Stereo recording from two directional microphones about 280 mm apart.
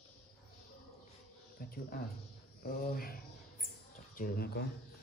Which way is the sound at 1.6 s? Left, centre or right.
Left.